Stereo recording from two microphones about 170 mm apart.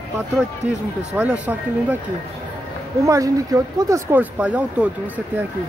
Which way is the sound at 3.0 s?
20° right (ahead or behind).